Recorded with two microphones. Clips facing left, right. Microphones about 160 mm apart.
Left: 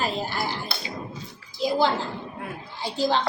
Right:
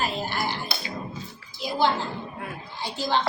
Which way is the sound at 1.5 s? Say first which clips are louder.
Left 2 dB; 35° left (ahead or behind).